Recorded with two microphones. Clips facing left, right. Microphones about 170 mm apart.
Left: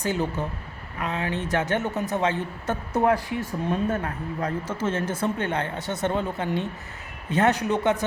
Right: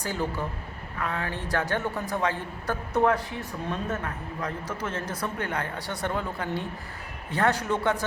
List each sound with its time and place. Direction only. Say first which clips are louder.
0.0 s speech: left 4 dB; 20° left (ahead or behind)